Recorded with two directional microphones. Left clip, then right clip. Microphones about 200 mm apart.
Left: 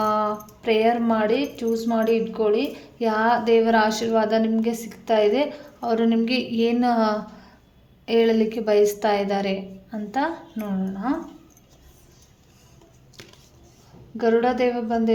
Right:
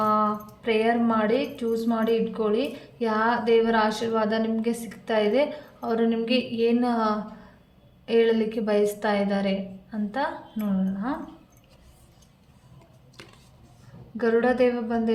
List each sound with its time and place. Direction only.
0.0 s a woman's voice: 40° left (ahead or behind)
14.2 s a woman's voice: 35° left (ahead or behind)